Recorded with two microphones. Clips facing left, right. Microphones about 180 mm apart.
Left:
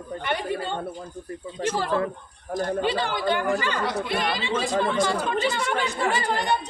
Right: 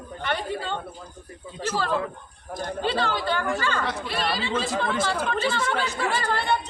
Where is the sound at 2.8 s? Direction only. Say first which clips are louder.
Left 1 dB; 15° left (ahead or behind).